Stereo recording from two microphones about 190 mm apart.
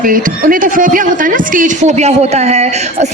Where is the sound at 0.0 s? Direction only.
45° right (ahead or behind).